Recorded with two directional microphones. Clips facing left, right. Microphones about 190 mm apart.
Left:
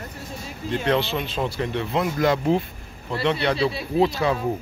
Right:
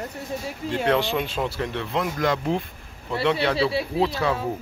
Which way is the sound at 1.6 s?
5° left (ahead or behind).